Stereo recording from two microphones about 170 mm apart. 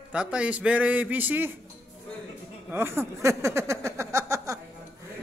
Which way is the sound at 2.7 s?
15° right (ahead or behind).